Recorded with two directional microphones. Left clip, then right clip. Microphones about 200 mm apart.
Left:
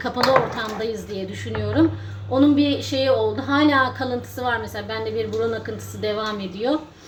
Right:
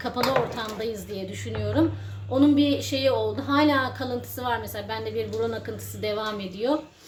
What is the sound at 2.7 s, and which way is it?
A woman's voice, 15° right (ahead or behind).